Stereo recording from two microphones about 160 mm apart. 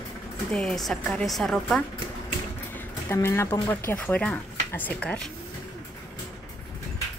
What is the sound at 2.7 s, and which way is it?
Speech, 15° left (ahead or behind).